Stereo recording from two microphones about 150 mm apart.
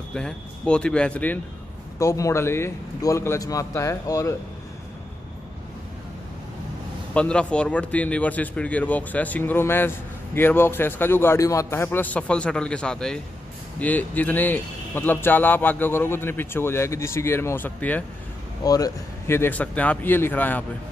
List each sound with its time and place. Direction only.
0.1 s speech: 5° left (ahead or behind)
7.2 s speech: 5° left (ahead or behind)
18.6 s speech: 25° left (ahead or behind)